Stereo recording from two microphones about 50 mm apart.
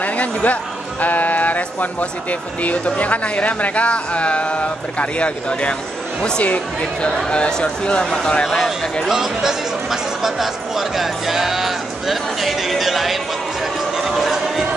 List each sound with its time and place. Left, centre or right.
0.0 s music: left
1.0 s speech: left; by 8.5 s centre
8.5 s speech: centre
9.1 s speech: centre
13.9 s a sound: centre